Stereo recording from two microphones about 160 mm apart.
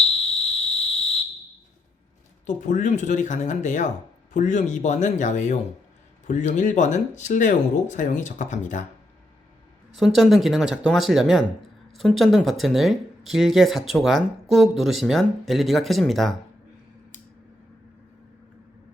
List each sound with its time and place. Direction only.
0.0 s whistle: centre (ahead or behind)
2.6 s speech: 55° left (ahead or behind)
9.9 s speech: centre (ahead or behind)